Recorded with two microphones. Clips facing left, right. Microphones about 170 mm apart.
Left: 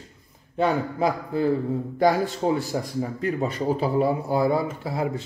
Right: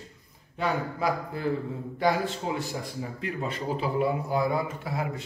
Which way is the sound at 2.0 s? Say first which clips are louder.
Left 5 dB; 35° left (ahead or behind).